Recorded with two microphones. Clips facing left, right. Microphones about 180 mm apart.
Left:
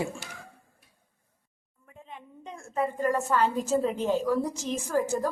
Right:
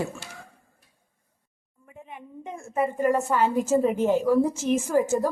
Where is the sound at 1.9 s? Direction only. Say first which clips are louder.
Right 4 dB; 15° right (ahead or behind).